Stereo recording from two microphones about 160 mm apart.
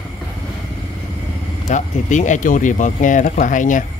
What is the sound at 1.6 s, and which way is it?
Speech, 50° left (ahead or behind).